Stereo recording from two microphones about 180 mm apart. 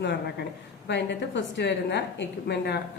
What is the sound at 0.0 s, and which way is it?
Speech, 70° left (ahead or behind).